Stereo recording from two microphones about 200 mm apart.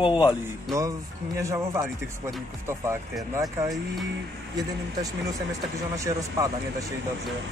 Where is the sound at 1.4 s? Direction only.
15° right (ahead or behind).